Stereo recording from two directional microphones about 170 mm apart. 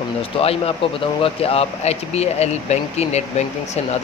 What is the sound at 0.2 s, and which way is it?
Speech, 35° left (ahead or behind).